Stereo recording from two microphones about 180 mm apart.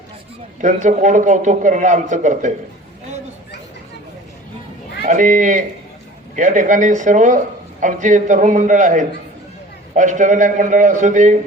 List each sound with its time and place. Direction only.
0.6 s a man's voice: 40° right (ahead or behind)
5.0 s a man's voice: 45° right (ahead or behind)